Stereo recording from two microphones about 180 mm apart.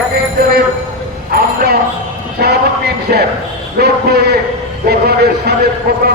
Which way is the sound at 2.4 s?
60° right (ahead or behind).